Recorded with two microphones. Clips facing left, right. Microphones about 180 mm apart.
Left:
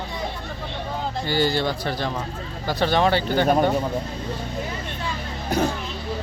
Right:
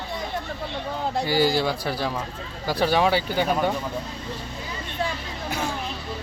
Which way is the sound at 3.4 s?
45° left (ahead or behind).